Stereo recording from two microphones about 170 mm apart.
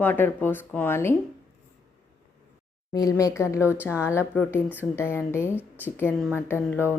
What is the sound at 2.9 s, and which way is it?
A woman's voice, 20° left (ahead or behind).